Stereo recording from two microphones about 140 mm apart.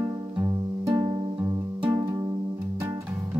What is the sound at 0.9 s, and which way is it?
Music, 15° right (ahead or behind).